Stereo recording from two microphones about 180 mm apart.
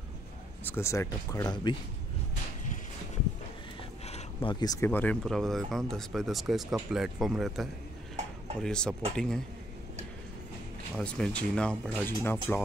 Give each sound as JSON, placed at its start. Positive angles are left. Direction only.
{"t": 0.7, "sound": "speech", "side_deg": 15}
{"t": 4.0, "sound": "speech", "side_deg": 30}
{"t": 11.0, "sound": "speech", "side_deg": 5}